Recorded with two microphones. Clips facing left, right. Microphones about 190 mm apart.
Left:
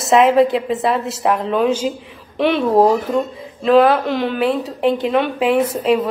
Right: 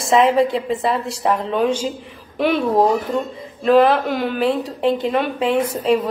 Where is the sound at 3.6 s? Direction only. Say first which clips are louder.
Left 1 dB; centre (ahead or behind).